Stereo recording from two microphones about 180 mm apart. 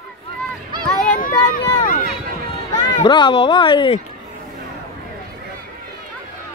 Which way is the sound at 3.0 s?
25° left (ahead or behind).